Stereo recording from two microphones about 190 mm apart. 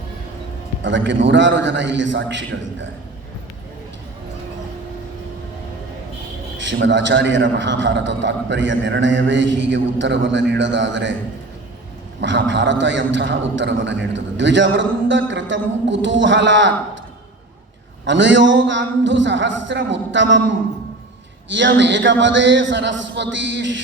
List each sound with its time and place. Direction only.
0.8 s a man's voice: 70° right (ahead or behind)
6.6 s a man's voice: 70° right (ahead or behind)
12.2 s a man's voice: 70° right (ahead or behind)
18.0 s a man's voice: 70° right (ahead or behind)